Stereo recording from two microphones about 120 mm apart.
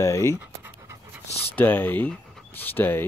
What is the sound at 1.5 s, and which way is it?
Speech, 15° left (ahead or behind).